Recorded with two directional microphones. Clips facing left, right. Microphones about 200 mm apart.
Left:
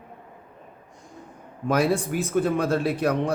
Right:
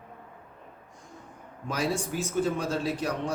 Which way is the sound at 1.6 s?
55° left (ahead or behind).